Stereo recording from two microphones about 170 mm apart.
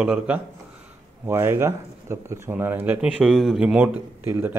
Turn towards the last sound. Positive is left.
turn(degrees=-10)  # may be behind; listen again after turning